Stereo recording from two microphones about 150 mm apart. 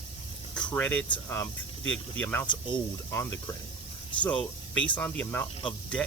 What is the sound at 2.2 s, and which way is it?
Speech, 10° left (ahead or behind).